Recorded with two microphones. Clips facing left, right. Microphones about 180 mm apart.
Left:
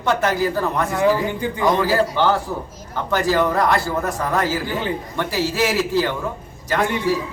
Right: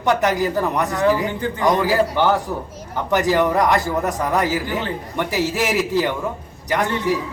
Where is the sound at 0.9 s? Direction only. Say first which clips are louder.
Left 1 dB; 15° left (ahead or behind).